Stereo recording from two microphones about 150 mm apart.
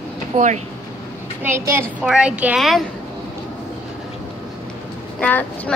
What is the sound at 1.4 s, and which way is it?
Speech, 15° right (ahead or behind).